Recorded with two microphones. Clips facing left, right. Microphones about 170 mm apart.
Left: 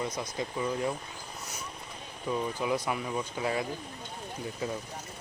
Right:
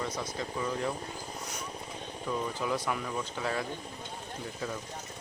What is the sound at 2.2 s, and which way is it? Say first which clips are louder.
Speech: left 2 dB; 10° left (ahead or behind).